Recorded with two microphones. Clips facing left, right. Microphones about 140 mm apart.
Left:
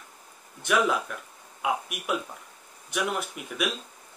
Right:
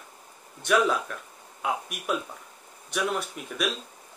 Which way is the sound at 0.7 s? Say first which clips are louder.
Right 1 dB; 5° left (ahead or behind).